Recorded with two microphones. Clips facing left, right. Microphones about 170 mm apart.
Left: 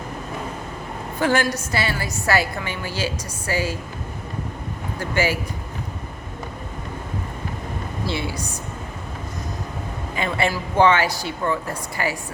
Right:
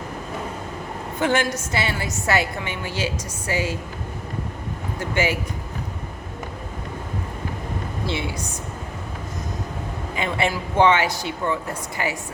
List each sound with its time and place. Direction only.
1.2 s a woman's voice: 20° right (ahead or behind)
4.9 s a woman's voice: 20° right (ahead or behind)
8.0 s a woman's voice: 20° right (ahead or behind)
10.2 s a woman's voice: 20° right (ahead or behind)